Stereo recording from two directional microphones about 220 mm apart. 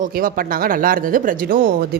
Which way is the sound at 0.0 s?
40° right (ahead or behind).